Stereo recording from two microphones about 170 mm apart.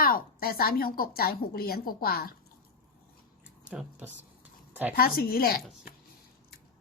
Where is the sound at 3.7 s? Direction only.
10° right (ahead or behind).